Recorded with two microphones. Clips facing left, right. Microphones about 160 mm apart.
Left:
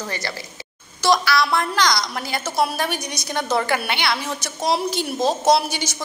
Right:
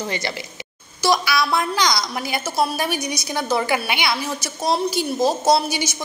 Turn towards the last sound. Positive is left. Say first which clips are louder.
# even
turn(degrees=-5)  # may be behind; listen again after turning